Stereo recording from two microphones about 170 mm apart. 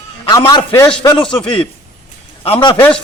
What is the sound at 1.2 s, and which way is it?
Speech, 5° left (ahead or behind).